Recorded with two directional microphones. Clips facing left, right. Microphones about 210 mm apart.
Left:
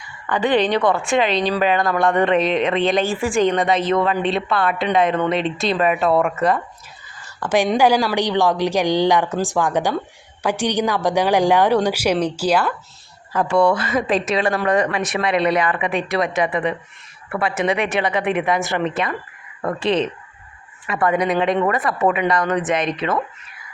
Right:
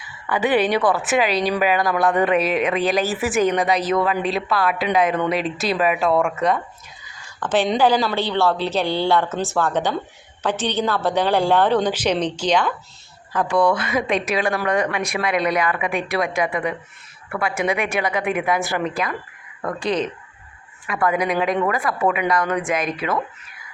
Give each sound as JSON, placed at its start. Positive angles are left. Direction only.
{"t": 0.0, "sound": "a woman's voice", "side_deg": -5}
{"t": 13.7, "sound": "a woman's voice", "side_deg": -10}
{"t": 19.6, "sound": "speech", "side_deg": 25}
{"t": 21.0, "sound": "a woman's voice", "side_deg": 0}